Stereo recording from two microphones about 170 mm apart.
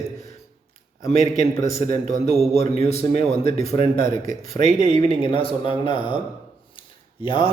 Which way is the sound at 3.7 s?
55° right (ahead or behind).